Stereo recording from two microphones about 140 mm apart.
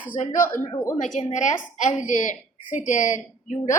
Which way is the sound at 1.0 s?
60° left (ahead or behind).